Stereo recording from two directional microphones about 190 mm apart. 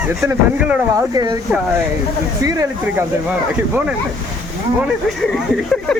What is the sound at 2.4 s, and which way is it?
Speech, 20° right (ahead or behind).